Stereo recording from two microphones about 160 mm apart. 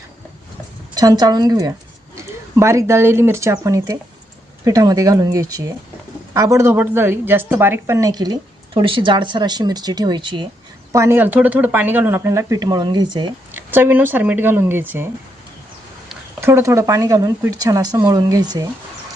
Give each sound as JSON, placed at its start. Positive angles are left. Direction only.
{"t": 0.9, "sound": "a woman's voice", "side_deg": -25}
{"t": 10.9, "sound": "speech", "side_deg": -15}
{"t": 13.5, "sound": "speech", "side_deg": -10}
{"t": 16.4, "sound": "a woman's voice", "side_deg": -15}